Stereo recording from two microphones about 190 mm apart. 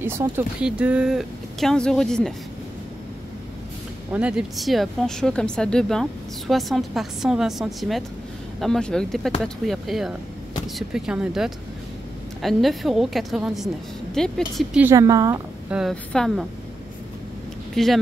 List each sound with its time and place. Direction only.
0.0 s speech: 10° right (ahead or behind)
4.1 s speech: 5° right (ahead or behind)
15.7 s speech: centre (ahead or behind)
17.7 s speech: centre (ahead or behind)